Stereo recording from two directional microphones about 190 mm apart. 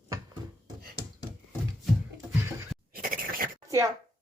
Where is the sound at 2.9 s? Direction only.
50° right (ahead or behind).